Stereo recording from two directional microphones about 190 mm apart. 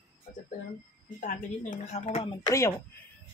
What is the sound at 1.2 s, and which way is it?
Speech, 45° left (ahead or behind).